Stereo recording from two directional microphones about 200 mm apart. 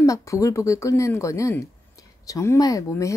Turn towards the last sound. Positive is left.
turn(degrees=15)  # may be behind; listen again after turning